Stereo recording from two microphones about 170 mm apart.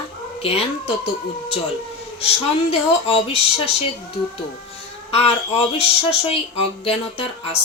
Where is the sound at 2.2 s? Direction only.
35° left (ahead or behind).